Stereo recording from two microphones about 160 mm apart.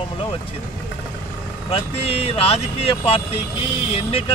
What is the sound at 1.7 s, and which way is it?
Speech, 40° left (ahead or behind).